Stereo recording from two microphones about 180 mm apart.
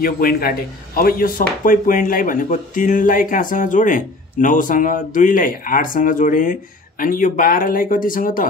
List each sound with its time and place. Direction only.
0.0 s speech: 55° left (ahead or behind)